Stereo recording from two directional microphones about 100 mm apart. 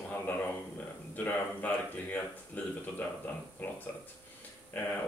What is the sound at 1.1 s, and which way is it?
Speech, 15° left (ahead or behind).